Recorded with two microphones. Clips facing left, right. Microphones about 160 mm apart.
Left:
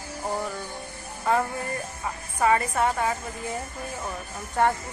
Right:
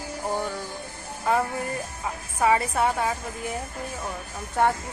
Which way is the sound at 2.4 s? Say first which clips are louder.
Even; 5° right (ahead or behind).